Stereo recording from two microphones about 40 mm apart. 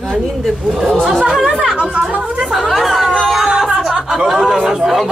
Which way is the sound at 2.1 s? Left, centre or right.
Right.